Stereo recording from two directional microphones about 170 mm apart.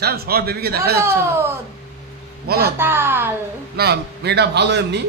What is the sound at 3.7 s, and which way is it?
A man's voice, 70° right (ahead or behind).